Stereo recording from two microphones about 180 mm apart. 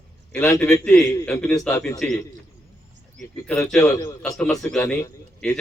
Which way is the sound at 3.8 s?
20° left (ahead or behind).